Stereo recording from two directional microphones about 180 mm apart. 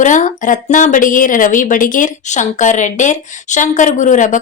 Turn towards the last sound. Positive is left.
turn(degrees=45)  # may be behind; listen again after turning